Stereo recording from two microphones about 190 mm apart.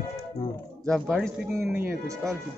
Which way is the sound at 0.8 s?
Centre (ahead or behind).